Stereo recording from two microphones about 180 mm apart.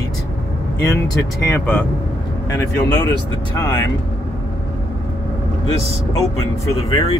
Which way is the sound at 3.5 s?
15° left (ahead or behind).